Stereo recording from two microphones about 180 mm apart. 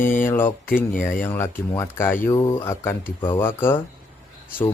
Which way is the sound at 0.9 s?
45° left (ahead or behind).